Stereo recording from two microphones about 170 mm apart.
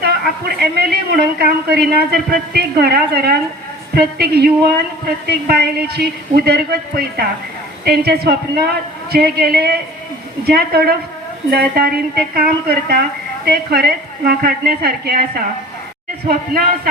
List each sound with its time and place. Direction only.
0.0 s a woman's voice: 65° right (ahead or behind)
16.3 s speech: 65° right (ahead or behind)